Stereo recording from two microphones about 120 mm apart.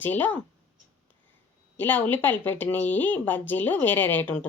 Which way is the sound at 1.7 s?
15° left (ahead or behind).